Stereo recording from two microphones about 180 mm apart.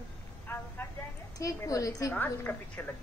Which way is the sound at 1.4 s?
20° left (ahead or behind).